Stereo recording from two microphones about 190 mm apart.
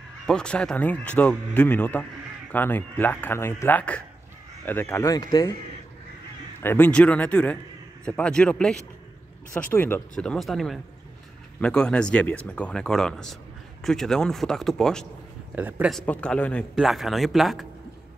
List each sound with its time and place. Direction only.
0.3 s speech: 5° left (ahead or behind)
6.6 s speech: 10° left (ahead or behind)